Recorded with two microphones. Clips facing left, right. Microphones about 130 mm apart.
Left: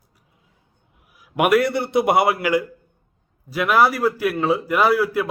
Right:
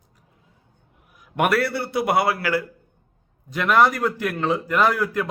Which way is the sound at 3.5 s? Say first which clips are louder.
Left 1 dB; 5° left (ahead or behind).